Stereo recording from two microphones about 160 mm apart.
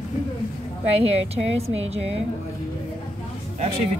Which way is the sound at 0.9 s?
40° right (ahead or behind).